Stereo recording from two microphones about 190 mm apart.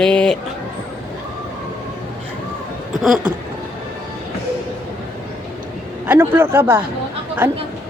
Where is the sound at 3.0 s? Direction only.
Centre (ahead or behind).